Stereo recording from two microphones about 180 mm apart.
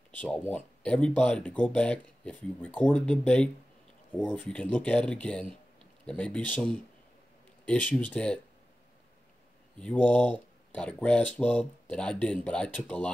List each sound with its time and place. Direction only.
0.1 s speech: 10° left (ahead or behind)
9.8 s speech: 5° left (ahead or behind)